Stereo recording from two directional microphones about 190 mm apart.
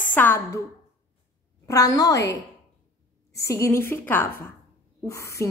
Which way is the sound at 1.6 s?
20° left (ahead or behind).